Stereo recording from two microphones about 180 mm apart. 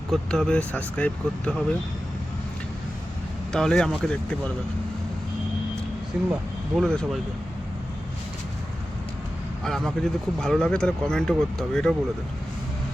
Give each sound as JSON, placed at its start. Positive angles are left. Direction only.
{"t": 0.1, "sound": "speech", "side_deg": 5}
{"t": 3.5, "sound": "speech", "side_deg": 5}
{"t": 6.1, "sound": "speech", "side_deg": -5}
{"t": 9.6, "sound": "speech", "side_deg": 0}